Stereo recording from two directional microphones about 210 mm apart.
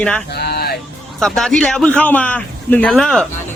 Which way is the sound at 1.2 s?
Centre (ahead or behind).